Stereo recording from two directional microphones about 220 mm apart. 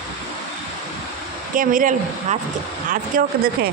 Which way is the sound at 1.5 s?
40° right (ahead or behind).